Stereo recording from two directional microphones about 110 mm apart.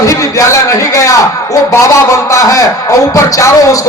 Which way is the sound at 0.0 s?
30° left (ahead or behind).